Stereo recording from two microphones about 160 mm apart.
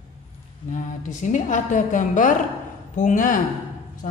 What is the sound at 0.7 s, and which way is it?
A woman's voice, 50° left (ahead or behind).